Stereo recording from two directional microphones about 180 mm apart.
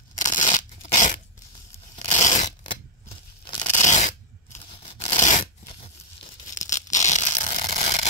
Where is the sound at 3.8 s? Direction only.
40° left (ahead or behind).